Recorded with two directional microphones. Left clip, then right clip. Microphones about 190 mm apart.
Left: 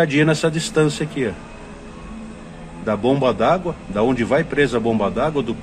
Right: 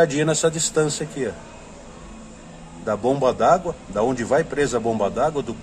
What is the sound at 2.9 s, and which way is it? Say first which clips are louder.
A man's voice: left 2 dB; centre (ahead or behind).